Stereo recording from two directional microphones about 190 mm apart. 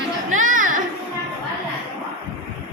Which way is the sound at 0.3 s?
45° right (ahead or behind).